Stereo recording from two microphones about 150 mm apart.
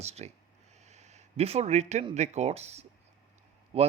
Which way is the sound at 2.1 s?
50° right (ahead or behind).